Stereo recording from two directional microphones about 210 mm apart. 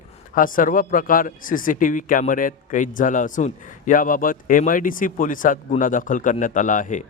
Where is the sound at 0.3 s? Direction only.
40° left (ahead or behind).